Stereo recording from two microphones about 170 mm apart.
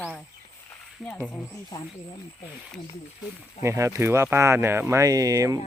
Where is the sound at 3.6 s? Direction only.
15° right (ahead or behind).